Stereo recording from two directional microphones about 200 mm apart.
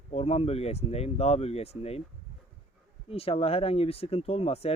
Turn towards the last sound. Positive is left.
turn(degrees=30)  # may be behind; listen again after turning